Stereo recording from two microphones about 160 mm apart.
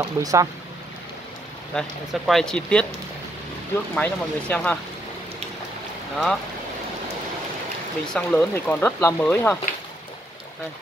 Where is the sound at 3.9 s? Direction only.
10° left (ahead or behind).